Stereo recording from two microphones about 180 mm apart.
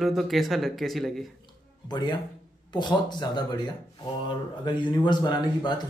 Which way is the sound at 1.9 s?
25° left (ahead or behind).